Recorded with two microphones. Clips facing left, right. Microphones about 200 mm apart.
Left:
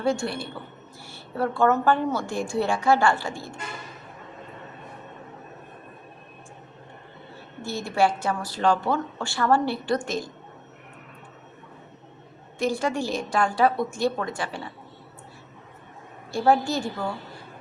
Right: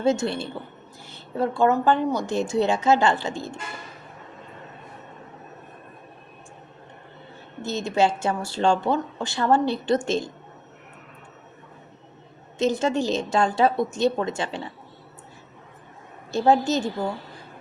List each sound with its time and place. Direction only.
0.0 s a woman's voice: 20° right (ahead or behind)
7.6 s a woman's voice: 20° right (ahead or behind)
12.5 s a woman's voice: 20° right (ahead or behind)
16.3 s a woman's voice: 20° right (ahead or behind)